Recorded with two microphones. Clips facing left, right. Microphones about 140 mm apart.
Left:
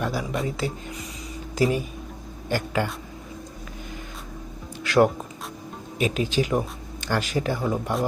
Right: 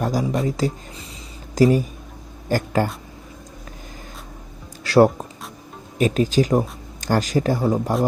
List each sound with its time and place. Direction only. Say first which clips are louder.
0.0 s speech: right 5 dB; 40° right (ahead or behind)
4.8 s music: right 4 dB; 35° right (ahead or behind)
6.0 s speech: right 6 dB; 40° right (ahead or behind)